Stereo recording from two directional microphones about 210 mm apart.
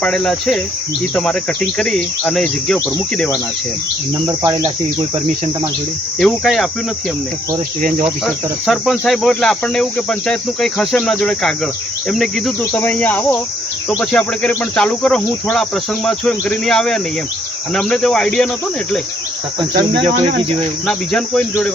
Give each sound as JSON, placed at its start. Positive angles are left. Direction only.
{"t": 0.0, "sound": "cricket", "side_deg": 5}
{"t": 6.1, "sound": "cricket", "side_deg": 0}
{"t": 7.8, "sound": "cricket", "side_deg": -40}
{"t": 8.0, "sound": "cricket", "side_deg": 0}
{"t": 20.8, "sound": "cricket", "side_deg": 5}